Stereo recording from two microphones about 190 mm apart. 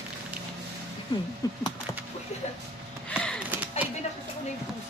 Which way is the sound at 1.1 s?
25° left (ahead or behind).